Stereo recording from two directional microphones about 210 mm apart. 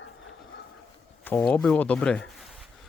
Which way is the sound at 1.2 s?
5° left (ahead or behind).